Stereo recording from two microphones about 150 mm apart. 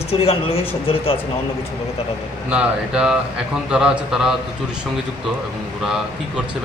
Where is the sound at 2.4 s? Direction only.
5° right (ahead or behind).